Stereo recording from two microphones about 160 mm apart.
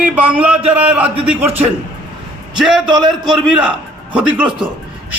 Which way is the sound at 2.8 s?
25° right (ahead or behind).